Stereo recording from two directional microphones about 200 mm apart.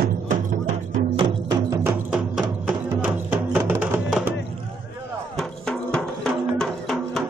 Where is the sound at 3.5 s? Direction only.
10° right (ahead or behind).